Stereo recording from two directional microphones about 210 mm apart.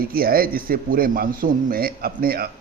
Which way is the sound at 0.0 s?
45° right (ahead or behind).